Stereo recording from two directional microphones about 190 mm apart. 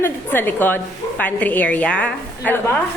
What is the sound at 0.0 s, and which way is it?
A woman's voice, 10° left (ahead or behind).